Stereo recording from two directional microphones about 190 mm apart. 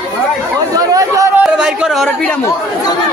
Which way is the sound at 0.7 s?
20° right (ahead or behind).